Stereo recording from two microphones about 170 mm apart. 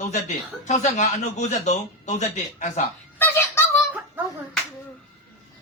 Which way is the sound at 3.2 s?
15° left (ahead or behind).